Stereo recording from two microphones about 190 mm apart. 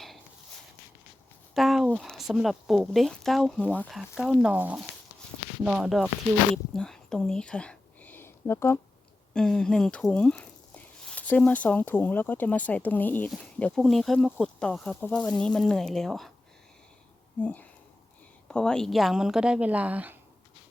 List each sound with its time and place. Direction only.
1.5 s speech: centre (ahead or behind)
6.7 s whispering: 5° left (ahead or behind)
9.3 s speech: 5° left (ahead or behind)
17.4 s speech: 10° left (ahead or behind); by 20.1 s 10° right (ahead or behind)